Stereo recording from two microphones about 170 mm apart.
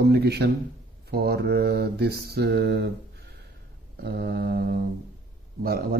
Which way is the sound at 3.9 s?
65° right (ahead or behind).